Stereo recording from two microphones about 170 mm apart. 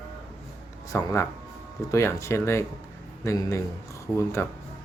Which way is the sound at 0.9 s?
15° left (ahead or behind).